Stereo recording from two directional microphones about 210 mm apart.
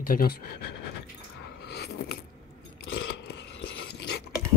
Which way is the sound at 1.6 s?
55° left (ahead or behind).